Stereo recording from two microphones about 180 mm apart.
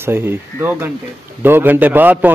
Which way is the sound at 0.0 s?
10° right (ahead or behind).